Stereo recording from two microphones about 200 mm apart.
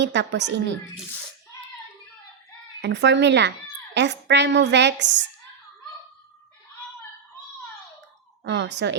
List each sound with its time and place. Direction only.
0.0 s a woman's voice: 60° right (ahead or behind)
2.8 s a woman's voice: 60° right (ahead or behind)
8.4 s a woman's voice: 60° right (ahead or behind)